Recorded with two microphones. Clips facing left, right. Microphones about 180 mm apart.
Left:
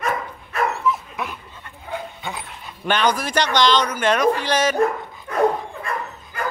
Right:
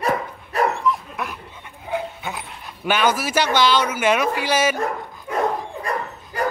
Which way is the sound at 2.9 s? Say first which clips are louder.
Even; 5° right (ahead or behind).